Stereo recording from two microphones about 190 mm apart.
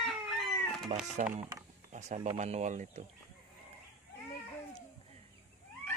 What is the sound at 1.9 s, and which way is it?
Chicken, 35° right (ahead or behind).